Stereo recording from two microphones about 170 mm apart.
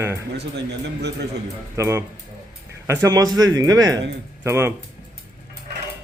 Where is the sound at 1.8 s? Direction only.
15° right (ahead or behind).